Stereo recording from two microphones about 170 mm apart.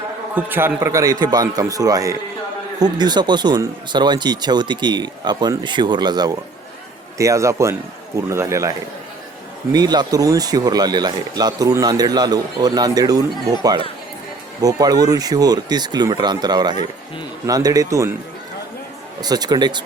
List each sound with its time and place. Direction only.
0.3 s a man's voice: 10° right (ahead or behind)
9.7 s speech: 25° right (ahead or behind)
19.2 s speech: 25° right (ahead or behind)